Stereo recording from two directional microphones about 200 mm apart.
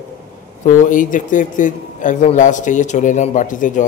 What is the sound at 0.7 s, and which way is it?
A man's voice, 40° left (ahead or behind).